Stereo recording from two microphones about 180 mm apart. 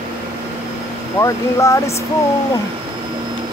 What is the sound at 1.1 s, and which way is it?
Speech, 15° left (ahead or behind).